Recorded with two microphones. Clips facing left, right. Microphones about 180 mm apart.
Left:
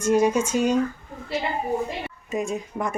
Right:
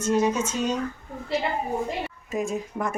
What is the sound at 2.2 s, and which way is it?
Speech, centre (ahead or behind).